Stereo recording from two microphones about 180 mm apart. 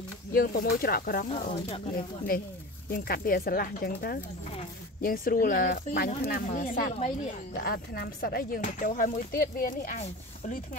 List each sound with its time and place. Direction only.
0.3 s speech: 55° left (ahead or behind)
1.3 s speech: 35° left (ahead or behind)
2.0 s speech: 55° left (ahead or behind)